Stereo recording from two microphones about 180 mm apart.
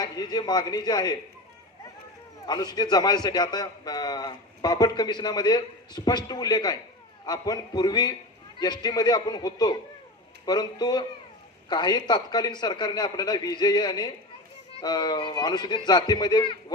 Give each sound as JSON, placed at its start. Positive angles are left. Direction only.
{"t": 0.0, "sound": "a man's voice", "side_deg": 25}
{"t": 2.5, "sound": "a man's voice", "side_deg": 20}